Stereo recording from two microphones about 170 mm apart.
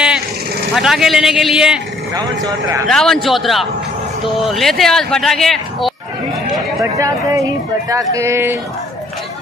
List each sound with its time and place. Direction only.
0.7 s speech: centre (ahead or behind)
2.1 s speech: 20° right (ahead or behind)
2.9 s speech: 5° left (ahead or behind)
6.8 s speech: 20° right (ahead or behind)